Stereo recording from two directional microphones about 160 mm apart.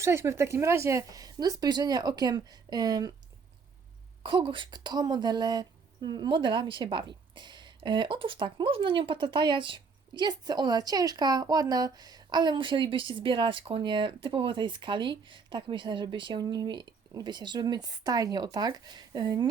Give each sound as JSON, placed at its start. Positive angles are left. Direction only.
{"t": 0.0, "sound": "a woman's voice", "side_deg": -15}
{"t": 4.2, "sound": "a woman's voice", "side_deg": -30}